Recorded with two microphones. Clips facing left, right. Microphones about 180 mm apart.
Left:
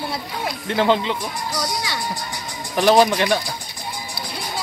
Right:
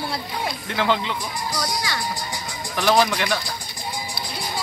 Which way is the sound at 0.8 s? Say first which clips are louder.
Left 4 dB; 25° left (ahead or behind).